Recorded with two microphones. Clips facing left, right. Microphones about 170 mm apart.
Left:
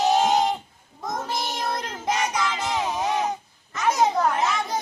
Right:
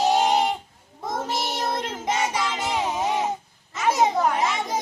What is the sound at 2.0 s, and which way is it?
Child singing, 10° right (ahead or behind).